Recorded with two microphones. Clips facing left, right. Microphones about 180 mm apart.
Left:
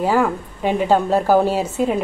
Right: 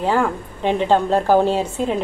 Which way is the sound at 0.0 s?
10° left (ahead or behind).